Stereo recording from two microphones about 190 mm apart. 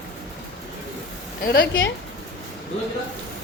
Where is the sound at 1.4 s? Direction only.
60° left (ahead or behind).